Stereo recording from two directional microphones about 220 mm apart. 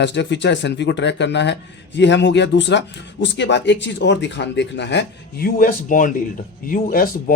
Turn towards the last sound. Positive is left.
turn(degrees=40)  # may be behind; listen again after turning